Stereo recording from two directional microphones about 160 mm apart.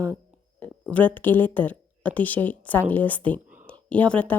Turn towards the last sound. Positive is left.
turn(degrees=10)  # may be behind; listen again after turning